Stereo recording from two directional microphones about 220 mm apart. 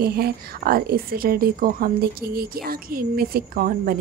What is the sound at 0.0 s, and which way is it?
A woman's voice, 45° right (ahead or behind).